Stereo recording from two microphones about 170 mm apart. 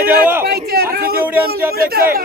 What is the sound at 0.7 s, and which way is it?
A man's voice, 65° right (ahead or behind).